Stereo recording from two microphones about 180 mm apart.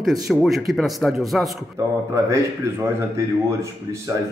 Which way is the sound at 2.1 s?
15° right (ahead or behind).